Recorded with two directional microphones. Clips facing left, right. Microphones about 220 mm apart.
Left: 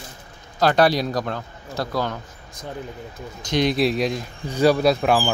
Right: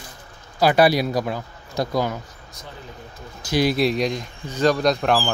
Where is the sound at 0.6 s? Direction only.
10° right (ahead or behind).